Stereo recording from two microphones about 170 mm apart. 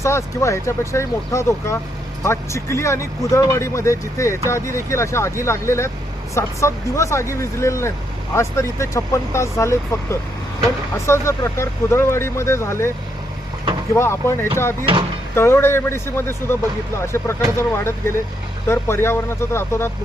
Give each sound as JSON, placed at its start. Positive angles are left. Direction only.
{"t": 0.0, "sound": "speech", "side_deg": 15}
{"t": 13.9, "sound": "speech", "side_deg": 15}